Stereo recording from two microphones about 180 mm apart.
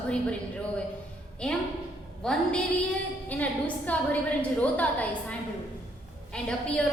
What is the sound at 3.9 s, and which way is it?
A woman's voice, 10° left (ahead or behind).